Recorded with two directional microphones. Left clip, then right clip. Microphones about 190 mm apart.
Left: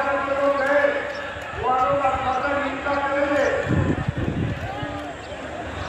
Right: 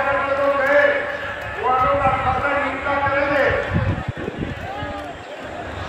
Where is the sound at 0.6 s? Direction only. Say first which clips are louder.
Right 6 dB; 45° left (ahead or behind).